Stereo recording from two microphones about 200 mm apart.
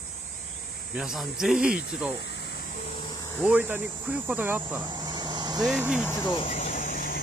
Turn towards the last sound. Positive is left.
turn(degrees=45)  # may be behind; listen again after turning